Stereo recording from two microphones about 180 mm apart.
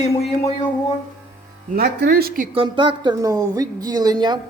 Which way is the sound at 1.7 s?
60° right (ahead or behind).